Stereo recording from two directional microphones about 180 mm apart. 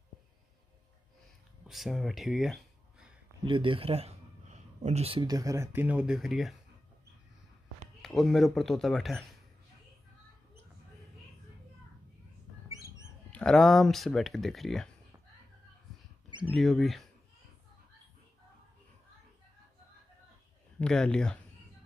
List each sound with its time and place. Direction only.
1.7 s speech: centre (ahead or behind)
3.4 s speech: 30° right (ahead or behind); by 6.5 s centre (ahead or behind)
8.0 s speech: centre (ahead or behind)
13.3 s speech: 5° left (ahead or behind)
16.3 s mouse: 25° right (ahead or behind)
16.5 s speech: centre (ahead or behind)
20.8 s speech: 5° left (ahead or behind)